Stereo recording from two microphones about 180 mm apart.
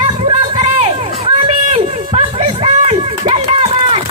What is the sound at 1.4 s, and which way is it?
Run, 35° right (ahead or behind).